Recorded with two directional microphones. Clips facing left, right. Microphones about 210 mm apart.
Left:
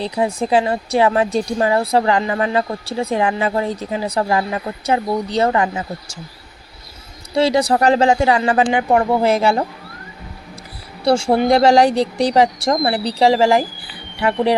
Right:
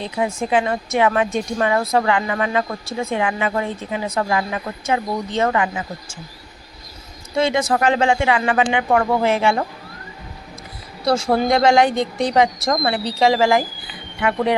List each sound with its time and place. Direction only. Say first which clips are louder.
0.0 s speech: left 3 dB; 35° left (ahead or behind)
7.3 s speech: left 3 dB; 35° left (ahead or behind)
11.0 s speech: left 3 dB; 30° left (ahead or behind)